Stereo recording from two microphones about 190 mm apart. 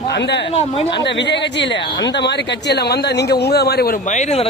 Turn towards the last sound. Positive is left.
turn(degrees=35)  # may be behind; listen again after turning